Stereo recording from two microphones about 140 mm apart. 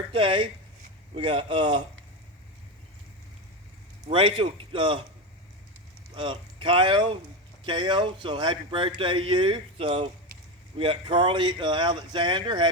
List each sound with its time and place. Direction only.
0.1 s speech: 40° right (ahead or behind)
4.1 s speech: 35° right (ahead or behind)
6.1 s speech: 35° right (ahead or behind)